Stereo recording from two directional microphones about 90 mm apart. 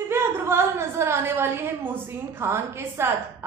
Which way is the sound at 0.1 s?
25° right (ahead or behind).